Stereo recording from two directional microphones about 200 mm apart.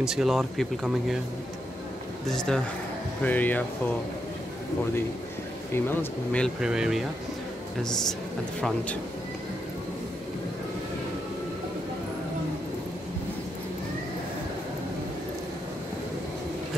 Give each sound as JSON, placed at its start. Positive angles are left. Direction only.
{"t": 0.0, "sound": "speech", "side_deg": 0}
{"t": 2.2, "sound": "speech", "side_deg": 5}
{"t": 5.7, "sound": "speech", "side_deg": 10}